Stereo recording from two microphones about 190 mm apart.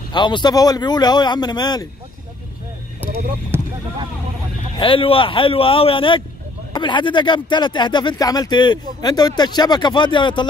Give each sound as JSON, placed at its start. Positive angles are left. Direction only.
{"t": 0.1, "sound": "speech", "side_deg": 25}
{"t": 3.5, "sound": "a sound", "side_deg": -10}
{"t": 4.7, "sound": "speech", "side_deg": 25}